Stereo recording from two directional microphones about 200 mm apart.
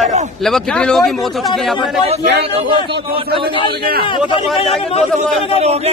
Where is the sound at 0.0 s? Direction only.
35° right (ahead or behind).